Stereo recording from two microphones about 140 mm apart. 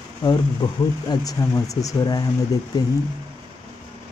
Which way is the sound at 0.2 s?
30° left (ahead or behind).